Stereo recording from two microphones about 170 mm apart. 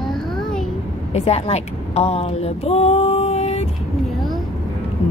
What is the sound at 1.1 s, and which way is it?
Speech, 35° left (ahead or behind).